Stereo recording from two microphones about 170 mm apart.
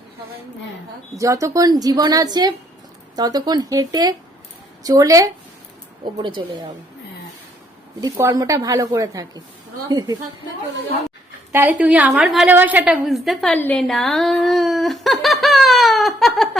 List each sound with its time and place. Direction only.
1.1 s speech: 20° right (ahead or behind)
8.0 s speech: 20° right (ahead or behind)
11.5 s a woman's voice: 10° right (ahead or behind)